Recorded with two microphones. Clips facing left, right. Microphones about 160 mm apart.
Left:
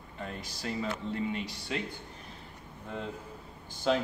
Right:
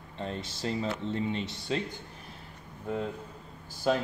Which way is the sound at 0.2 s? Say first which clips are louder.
Right 4 dB; 25° right (ahead or behind).